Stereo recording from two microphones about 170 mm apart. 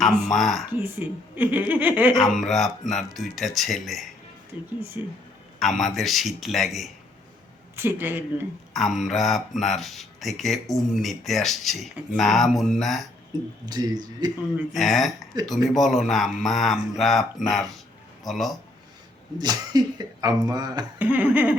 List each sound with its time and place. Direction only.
0.3 s speech: centre (ahead or behind)
0.8 s speech: 10° right (ahead or behind)
2.4 s speech: centre (ahead or behind)
7.8 s speech: 10° right (ahead or behind)
8.7 s speech: centre (ahead or behind)
13.7 s speech: 25° right (ahead or behind)
14.7 s a man's voice: centre (ahead or behind)
19.4 s speech: 25° right (ahead or behind)
21.0 s speech: 10° right (ahead or behind)